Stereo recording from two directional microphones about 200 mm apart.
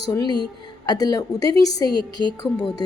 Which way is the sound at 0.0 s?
20° left (ahead or behind).